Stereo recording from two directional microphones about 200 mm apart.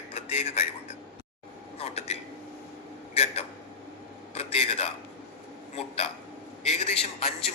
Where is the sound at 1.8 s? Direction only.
30° left (ahead or behind).